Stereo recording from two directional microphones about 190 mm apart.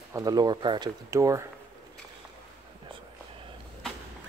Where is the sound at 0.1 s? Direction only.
20° right (ahead or behind).